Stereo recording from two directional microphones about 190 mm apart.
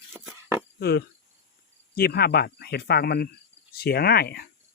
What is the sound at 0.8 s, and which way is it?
Speech, 55° left (ahead or behind).